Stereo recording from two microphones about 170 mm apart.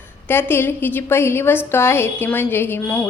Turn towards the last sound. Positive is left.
turn(degrees=10)  # may be behind; listen again after turning